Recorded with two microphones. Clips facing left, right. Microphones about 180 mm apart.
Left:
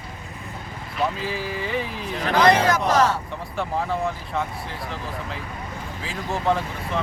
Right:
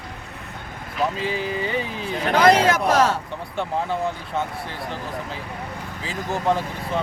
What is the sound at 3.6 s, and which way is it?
Speech, centre (ahead or behind).